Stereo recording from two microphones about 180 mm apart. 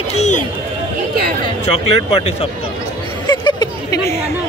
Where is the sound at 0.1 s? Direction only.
40° left (ahead or behind).